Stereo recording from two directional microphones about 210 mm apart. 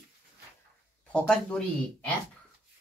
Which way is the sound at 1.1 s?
5° left (ahead or behind).